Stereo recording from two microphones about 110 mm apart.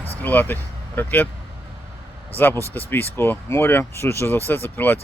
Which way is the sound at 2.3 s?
20° left (ahead or behind).